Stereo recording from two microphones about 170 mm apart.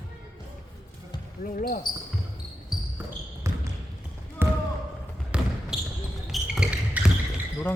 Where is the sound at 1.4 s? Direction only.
55° left (ahead or behind).